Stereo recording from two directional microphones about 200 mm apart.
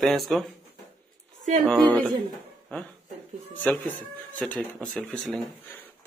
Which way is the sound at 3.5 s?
10° left (ahead or behind).